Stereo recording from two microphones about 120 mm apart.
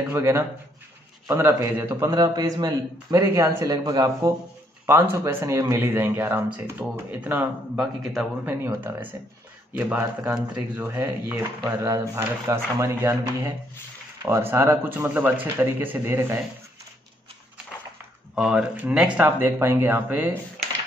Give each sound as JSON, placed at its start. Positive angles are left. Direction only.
{"t": 0.1, "sound": "speech", "side_deg": -25}
{"t": 2.0, "sound": "a man's voice", "side_deg": -35}
{"t": 7.8, "sound": "a man's voice", "side_deg": 0}
{"t": 8.5, "sound": "speech", "side_deg": -20}
{"t": 11.6, "sound": "speech", "side_deg": -30}
{"t": 18.3, "sound": "speech", "side_deg": -5}
{"t": 19.2, "sound": "speech", "side_deg": -20}